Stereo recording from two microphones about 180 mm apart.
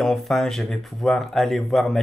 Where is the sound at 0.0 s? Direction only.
Centre (ahead or behind).